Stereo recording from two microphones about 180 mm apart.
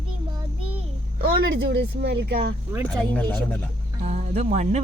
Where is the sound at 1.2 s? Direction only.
60° right (ahead or behind).